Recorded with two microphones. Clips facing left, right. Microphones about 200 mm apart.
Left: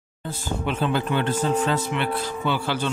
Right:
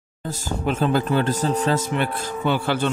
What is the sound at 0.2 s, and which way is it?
Speech, 40° right (ahead or behind).